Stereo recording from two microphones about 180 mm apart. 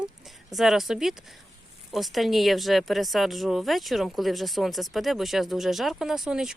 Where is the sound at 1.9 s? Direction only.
Centre (ahead or behind).